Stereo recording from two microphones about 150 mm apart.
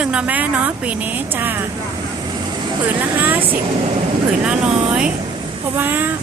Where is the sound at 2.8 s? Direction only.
10° right (ahead or behind).